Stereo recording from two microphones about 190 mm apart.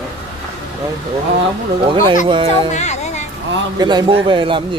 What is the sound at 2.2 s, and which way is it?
Speech, 25° right (ahead or behind).